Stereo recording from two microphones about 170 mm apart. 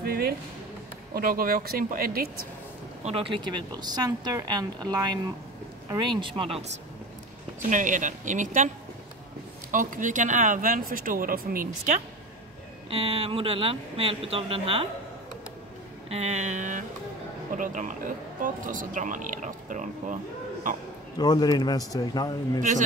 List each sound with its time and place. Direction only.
0.0 s a sound: 65° right (ahead or behind)
1.1 s speech: 60° right (ahead or behind)
3.0 s a woman's voice: 35° right (ahead or behind)
7.7 s speech: 50° right (ahead or behind)
9.7 s speech: 50° right (ahead or behind)
12.9 s speech: 35° right (ahead or behind)
16.1 s speech: 40° right (ahead or behind)
21.2 s a man's voice: 25° left (ahead or behind)